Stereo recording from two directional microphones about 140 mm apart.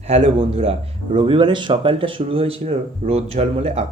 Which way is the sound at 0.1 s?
45° right (ahead or behind).